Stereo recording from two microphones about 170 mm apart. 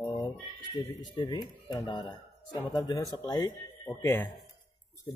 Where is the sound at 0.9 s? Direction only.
25° left (ahead or behind).